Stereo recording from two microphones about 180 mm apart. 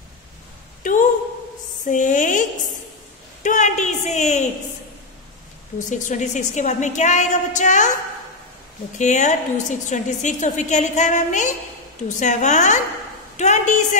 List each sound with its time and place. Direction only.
1.9 s a sound: 45° left (ahead or behind)
5.8 s a woman's voice: 45° left (ahead or behind)
8.9 s a woman's voice: 40° left (ahead or behind)